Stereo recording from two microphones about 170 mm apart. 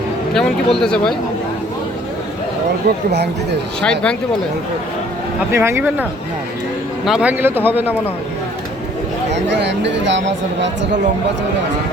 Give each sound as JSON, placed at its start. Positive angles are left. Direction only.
{"t": 0.3, "sound": "speech", "side_deg": 5}
{"t": 3.1, "sound": "speech", "side_deg": -80}
{"t": 3.8, "sound": "speech", "side_deg": 5}
{"t": 5.5, "sound": "a man's voice", "side_deg": -15}
{"t": 9.3, "sound": "speech", "side_deg": -90}